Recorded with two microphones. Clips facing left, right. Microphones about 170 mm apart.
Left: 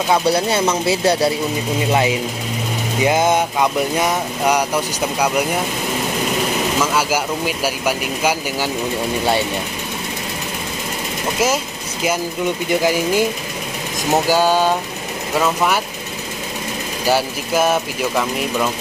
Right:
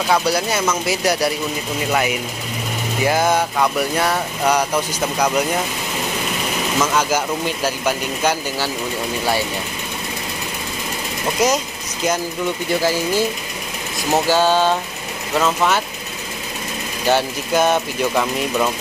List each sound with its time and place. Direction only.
0.1 s speech: 30° left (ahead or behind); by 5.3 s 10° left (ahead or behind)
7.0 s speech: 10° left (ahead or behind)
11.4 s speech: 5° left (ahead or behind)
14.3 s speech: 10° left (ahead or behind)
17.0 s speech: 5° left (ahead or behind)